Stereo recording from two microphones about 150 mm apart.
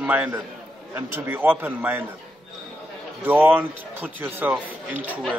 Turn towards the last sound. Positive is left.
turn(degrees=-10)  # may be behind; listen again after turning